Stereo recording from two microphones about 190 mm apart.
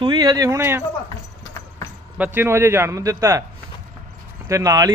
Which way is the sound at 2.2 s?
10° right (ahead or behind).